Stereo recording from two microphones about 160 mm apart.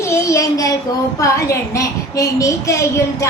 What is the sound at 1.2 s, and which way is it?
A woman's voice, 20° left (ahead or behind).